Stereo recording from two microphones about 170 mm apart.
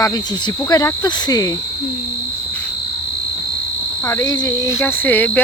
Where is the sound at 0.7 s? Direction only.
20° left (ahead or behind).